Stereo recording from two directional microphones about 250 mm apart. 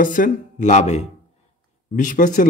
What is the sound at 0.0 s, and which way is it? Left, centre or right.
Speech, left.